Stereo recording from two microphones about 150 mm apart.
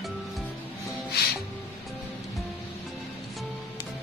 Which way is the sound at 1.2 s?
90° left.